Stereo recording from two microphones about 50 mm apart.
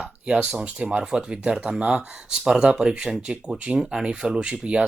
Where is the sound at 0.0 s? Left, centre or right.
Centre.